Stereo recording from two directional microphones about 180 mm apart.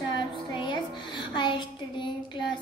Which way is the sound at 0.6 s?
25° left (ahead or behind).